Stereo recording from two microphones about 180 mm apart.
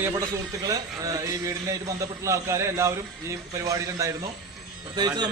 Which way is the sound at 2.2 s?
15° right (ahead or behind).